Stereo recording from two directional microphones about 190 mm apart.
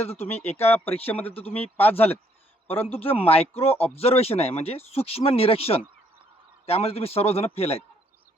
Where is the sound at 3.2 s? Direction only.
30° left (ahead or behind).